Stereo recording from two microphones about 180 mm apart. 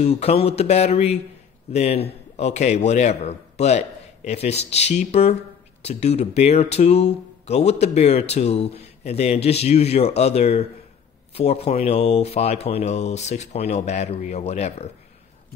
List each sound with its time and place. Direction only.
0.0 s a man's voice: 35° left (ahead or behind)